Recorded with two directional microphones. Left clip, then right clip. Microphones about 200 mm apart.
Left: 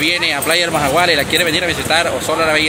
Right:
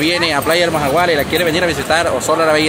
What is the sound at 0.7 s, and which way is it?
Speech, 5° right (ahead or behind).